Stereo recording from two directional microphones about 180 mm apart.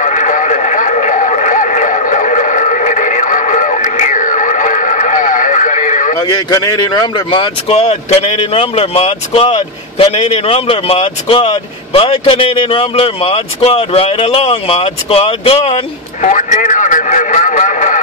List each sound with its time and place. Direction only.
0.0 s radio: 45° left (ahead or behind)
6.1 s speech: 20° left (ahead or behind); by 18.0 s 45° left (ahead or behind)